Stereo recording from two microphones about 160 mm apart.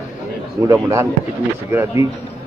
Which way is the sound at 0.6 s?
15° right (ahead or behind).